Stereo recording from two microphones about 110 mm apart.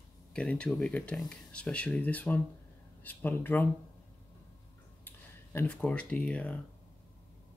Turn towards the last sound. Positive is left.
turn(degrees=15)  # may be behind; listen again after turning